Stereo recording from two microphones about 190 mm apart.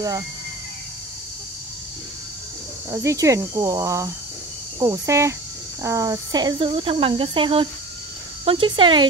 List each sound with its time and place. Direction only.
2.9 s speech: 15° right (ahead or behind)